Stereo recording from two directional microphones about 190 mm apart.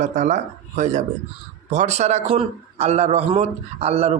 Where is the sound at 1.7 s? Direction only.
35° right (ahead or behind).